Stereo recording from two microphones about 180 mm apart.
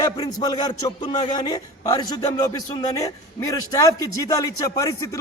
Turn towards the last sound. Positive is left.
turn(degrees=15)  # may be behind; listen again after turning